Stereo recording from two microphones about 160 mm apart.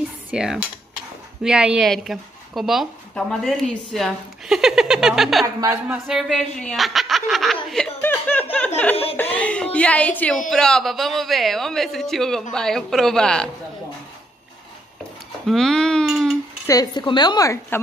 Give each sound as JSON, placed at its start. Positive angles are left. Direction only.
{"t": 0.3, "sound": "cutlery", "side_deg": -5}
{"t": 1.4, "sound": "a woman's voice", "side_deg": -5}
{"t": 7.7, "sound": "chuckle", "side_deg": 10}
{"t": 8.5, "sound": "snicker", "side_deg": 10}
{"t": 9.1, "sound": "a woman's voice", "side_deg": 10}
{"t": 15.4, "sound": "speech", "side_deg": 0}
{"t": 16.6, "sound": "a woman's voice", "side_deg": 25}